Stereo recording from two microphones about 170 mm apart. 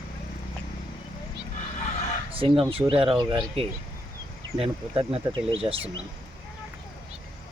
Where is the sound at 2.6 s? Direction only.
30° right (ahead or behind).